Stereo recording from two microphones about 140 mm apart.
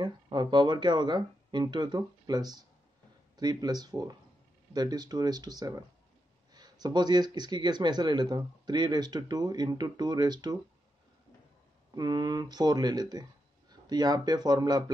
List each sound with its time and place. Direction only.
0.0 s speech: 30° right (ahead or behind)
11.9 s speech: 30° right (ahead or behind)